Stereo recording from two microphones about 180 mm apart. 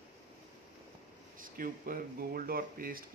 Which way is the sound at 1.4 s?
50° right (ahead or behind).